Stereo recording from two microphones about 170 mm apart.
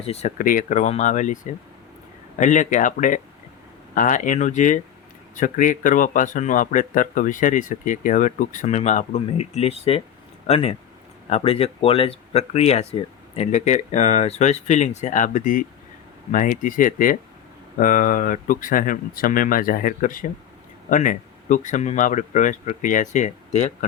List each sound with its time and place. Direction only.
0.0 s speech: 40° left (ahead or behind)